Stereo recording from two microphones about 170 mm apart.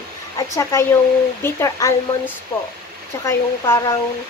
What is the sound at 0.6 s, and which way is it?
Speech, 15° left (ahead or behind).